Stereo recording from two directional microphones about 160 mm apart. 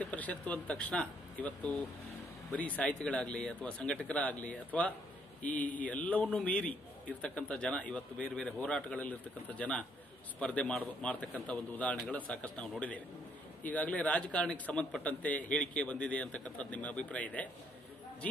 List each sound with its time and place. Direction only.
0.0 s a man's voice: 10° left (ahead or behind)